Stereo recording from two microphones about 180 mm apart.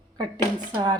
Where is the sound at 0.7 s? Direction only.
25° right (ahead or behind).